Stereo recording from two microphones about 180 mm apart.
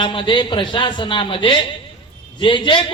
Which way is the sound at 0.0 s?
25° left (ahead or behind).